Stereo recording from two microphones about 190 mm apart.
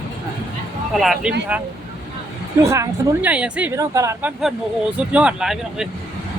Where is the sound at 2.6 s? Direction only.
15° right (ahead or behind).